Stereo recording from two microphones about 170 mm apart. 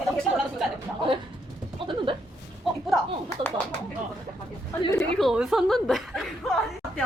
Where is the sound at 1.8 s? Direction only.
30° right (ahead or behind).